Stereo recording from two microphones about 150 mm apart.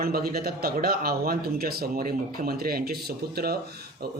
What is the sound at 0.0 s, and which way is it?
Speech, 85° right.